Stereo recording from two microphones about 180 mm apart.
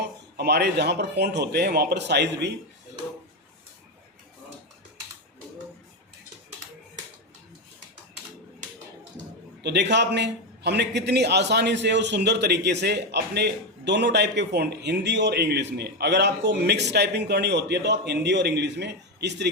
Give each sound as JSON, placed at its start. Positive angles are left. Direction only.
{"t": 0.3, "sound": "a man's voice", "side_deg": -65}
{"t": 9.6, "sound": "a man's voice", "side_deg": -70}